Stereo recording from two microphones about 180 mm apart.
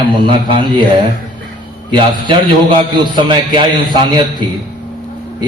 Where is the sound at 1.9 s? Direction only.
25° right (ahead or behind).